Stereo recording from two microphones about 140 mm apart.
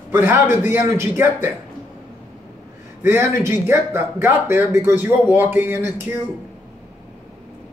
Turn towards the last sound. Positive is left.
turn(degrees=-15)  # may be behind; listen again after turning